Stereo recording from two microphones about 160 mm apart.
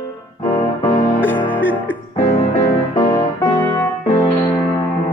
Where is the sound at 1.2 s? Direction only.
10° left (ahead or behind).